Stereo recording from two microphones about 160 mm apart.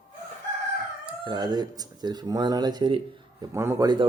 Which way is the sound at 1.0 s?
30° right (ahead or behind).